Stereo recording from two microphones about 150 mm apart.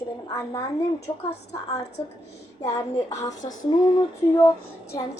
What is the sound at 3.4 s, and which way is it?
Female singing, 30° left (ahead or behind).